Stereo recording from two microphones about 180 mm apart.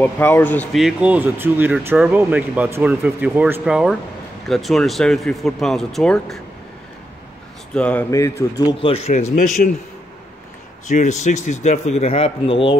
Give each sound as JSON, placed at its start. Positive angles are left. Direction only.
{"t": 0.0, "sound": "speech", "side_deg": 10}
{"t": 0.7, "sound": "speech", "side_deg": -5}
{"t": 7.7, "sound": "speech", "side_deg": 5}
{"t": 8.8, "sound": "speech", "side_deg": 35}
{"t": 10.9, "sound": "speech", "side_deg": 40}